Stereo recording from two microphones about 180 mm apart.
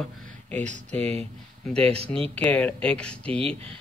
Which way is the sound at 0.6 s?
40° right (ahead or behind).